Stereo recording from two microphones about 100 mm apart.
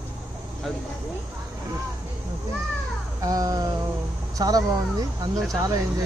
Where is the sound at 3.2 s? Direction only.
40° right (ahead or behind).